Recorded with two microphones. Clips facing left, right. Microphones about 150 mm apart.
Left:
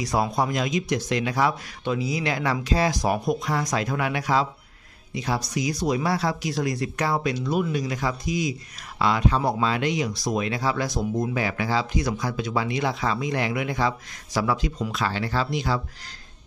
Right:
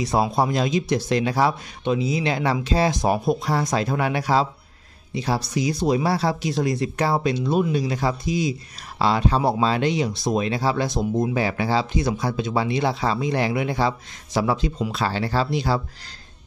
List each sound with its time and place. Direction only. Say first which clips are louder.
0.0 s speech: right 3 dB; 25° right (ahead or behind)